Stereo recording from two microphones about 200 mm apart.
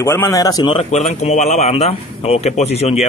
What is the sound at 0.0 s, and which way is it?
A man's voice, 15° left (ahead or behind).